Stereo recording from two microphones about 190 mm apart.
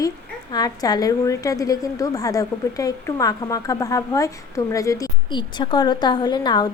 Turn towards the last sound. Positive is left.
turn(degrees=20)  # may be behind; listen again after turning